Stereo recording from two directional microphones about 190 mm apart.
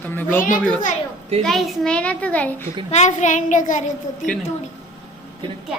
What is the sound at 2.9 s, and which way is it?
A child's voice, 40° left (ahead or behind).